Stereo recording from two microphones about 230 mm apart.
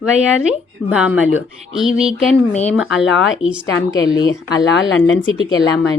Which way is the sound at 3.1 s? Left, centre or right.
Left.